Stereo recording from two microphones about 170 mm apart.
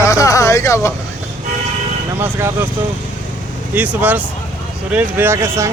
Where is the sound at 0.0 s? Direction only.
20° left (ahead or behind).